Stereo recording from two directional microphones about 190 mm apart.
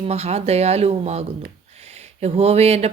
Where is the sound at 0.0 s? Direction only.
35° right (ahead or behind).